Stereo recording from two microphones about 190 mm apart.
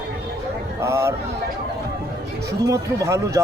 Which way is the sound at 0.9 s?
15° right (ahead or behind).